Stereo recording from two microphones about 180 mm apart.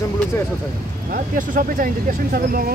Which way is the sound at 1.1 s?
50° right (ahead or behind).